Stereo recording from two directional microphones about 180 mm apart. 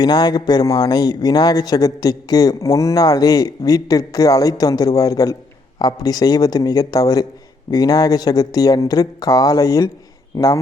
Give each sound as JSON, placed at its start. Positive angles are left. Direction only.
{"t": 0.0, "sound": "speech", "side_deg": 20}